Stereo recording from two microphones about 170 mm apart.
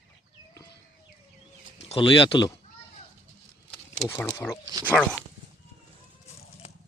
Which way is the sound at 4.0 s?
15° left (ahead or behind).